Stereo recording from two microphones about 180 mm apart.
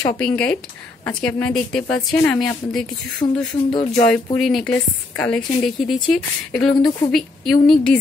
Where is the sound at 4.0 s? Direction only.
5° left (ahead or behind).